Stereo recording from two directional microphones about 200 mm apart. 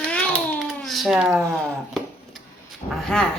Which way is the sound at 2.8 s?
30° left (ahead or behind).